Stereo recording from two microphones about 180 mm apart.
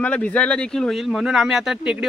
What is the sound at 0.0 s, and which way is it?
Speech, 10° left (ahead or behind).